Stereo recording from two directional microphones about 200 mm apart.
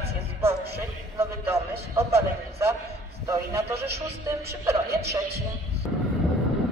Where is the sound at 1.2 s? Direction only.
15° right (ahead or behind).